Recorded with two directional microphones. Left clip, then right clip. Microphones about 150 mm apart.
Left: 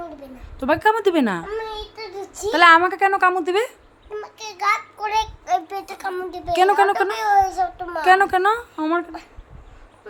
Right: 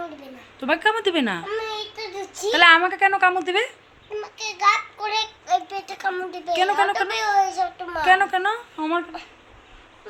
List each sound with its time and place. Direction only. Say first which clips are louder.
0.6 s a woman's voice: left 3 dB; 45° left (ahead or behind)
1.5 s a sound: right 1 dB; centre (ahead or behind)
2.2 s a sound: left 2 dB; 15° left (ahead or behind)
2.5 s a woman's voice: left 2 dB; 45° left (ahead or behind)
4.1 s child singing: right 2 dB; 20° left (ahead or behind)
5.5 s a child's voice: right 3 dB; 40° left (ahead or behind)
5.7 s a child's voice: left 1 dB; 20° left (ahead or behind)
6.1 s a child's voice: right 2 dB; 10° left (ahead or behind)
6.5 s a woman's voice: left 4 dB; 60° left (ahead or behind)
7.1 s a child's voice: left 3 dB; centre (ahead or behind)
8.0 s a woman's voice: left 3 dB; 65° left (ahead or behind); by 9.0 s 85° left